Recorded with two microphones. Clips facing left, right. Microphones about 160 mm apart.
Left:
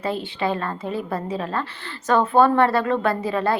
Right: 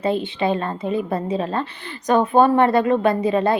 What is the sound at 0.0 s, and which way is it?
A woman's voice, 20° right (ahead or behind).